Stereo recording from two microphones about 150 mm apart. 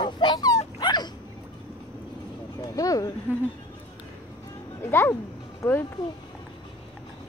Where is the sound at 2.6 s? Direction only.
25° left (ahead or behind).